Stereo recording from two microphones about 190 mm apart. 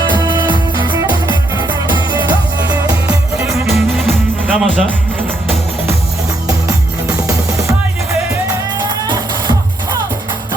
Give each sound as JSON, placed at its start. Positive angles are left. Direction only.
{"t": 0.1, "sound": "music", "side_deg": -25}
{"t": 3.5, "sound": "music", "side_deg": 0}
{"t": 6.5, "sound": "music", "side_deg": -15}
{"t": 9.0, "sound": "music", "side_deg": -20}